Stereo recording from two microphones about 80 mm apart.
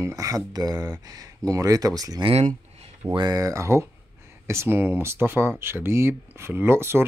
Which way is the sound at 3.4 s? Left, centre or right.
Right.